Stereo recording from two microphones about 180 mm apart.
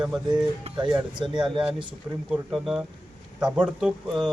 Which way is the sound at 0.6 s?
25° right (ahead or behind).